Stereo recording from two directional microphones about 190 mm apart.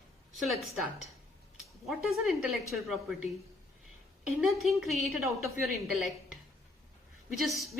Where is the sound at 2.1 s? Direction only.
Centre (ahead or behind).